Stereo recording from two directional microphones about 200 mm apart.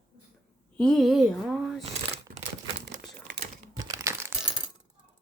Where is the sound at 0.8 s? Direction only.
5° left (ahead or behind).